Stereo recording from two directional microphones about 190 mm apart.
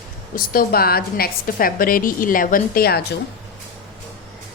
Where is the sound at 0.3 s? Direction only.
50° left (ahead or behind).